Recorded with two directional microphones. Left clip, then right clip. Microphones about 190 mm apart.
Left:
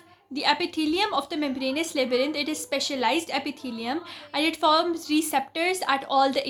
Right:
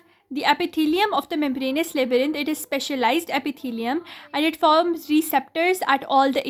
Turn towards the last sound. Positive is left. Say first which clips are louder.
# right 3 dB
turn(degrees=-45)  # may be behind; listen again after turning